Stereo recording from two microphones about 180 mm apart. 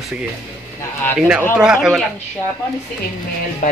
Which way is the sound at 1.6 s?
5° right (ahead or behind).